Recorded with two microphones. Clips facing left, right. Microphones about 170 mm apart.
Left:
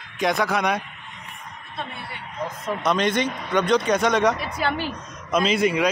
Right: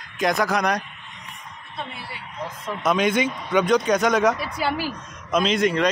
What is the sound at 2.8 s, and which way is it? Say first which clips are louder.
Speech: right 2 dB; 5° right (ahead or behind).